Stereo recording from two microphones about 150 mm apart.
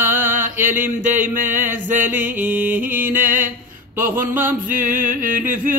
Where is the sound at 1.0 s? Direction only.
60° right (ahead or behind).